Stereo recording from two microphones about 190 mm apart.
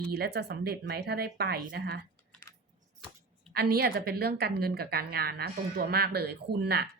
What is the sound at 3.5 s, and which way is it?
Speech, 55° right (ahead or behind).